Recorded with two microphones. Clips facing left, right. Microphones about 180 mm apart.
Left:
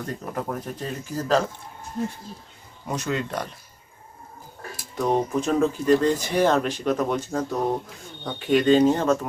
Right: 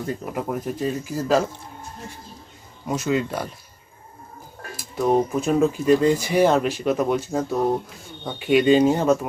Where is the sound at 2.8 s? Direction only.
10° right (ahead or behind).